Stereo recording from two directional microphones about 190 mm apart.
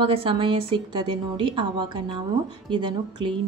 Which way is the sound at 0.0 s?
30° right (ahead or behind).